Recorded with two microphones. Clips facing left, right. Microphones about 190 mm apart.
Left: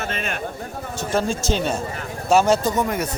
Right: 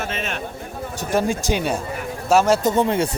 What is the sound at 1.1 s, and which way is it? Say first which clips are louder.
Speech: right 2 dB; 15° right (ahead or behind).